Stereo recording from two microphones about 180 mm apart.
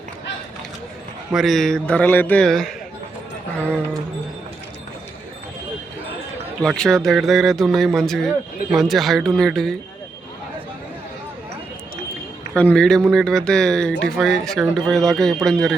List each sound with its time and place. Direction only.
1.3 s speech: centre (ahead or behind)
6.6 s speech: 5° left (ahead or behind)
12.5 s speech: 5° left (ahead or behind)